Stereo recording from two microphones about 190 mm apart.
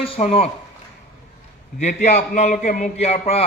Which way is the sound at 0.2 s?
40° left (ahead or behind).